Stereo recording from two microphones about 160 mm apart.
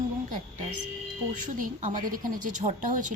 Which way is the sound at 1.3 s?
50° right (ahead or behind).